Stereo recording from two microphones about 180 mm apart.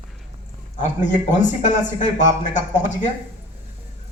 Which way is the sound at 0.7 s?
45° left (ahead or behind).